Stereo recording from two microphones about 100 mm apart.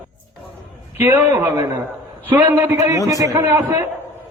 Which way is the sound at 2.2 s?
20° right (ahead or behind).